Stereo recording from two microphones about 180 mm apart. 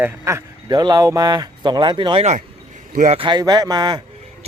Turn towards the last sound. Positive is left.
turn(degrees=-20)  # may be behind; listen again after turning